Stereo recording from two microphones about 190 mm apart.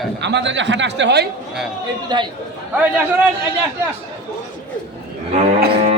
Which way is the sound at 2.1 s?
20° right (ahead or behind).